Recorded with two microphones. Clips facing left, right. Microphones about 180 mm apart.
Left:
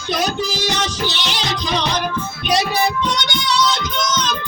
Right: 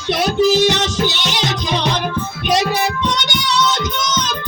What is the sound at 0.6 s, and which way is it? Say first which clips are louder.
Music: right 6 dB; 20° right (ahead or behind).